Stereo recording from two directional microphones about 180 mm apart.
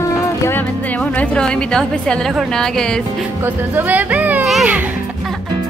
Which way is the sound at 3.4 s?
10° right (ahead or behind).